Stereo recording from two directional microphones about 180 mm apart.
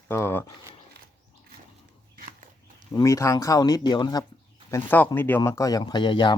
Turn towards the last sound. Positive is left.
turn(degrees=25)  # may be behind; listen again after turning